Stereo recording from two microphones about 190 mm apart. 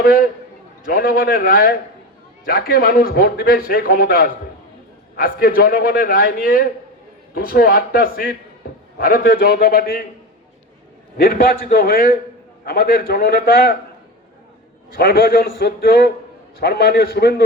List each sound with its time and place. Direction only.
0.0 s a man's voice: 50° left (ahead or behind)
11.2 s a man's voice: 50° left (ahead or behind)
14.9 s a man's voice: 50° left (ahead or behind)